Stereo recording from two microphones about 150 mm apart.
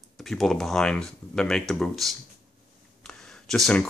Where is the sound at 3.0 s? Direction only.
5° left (ahead or behind).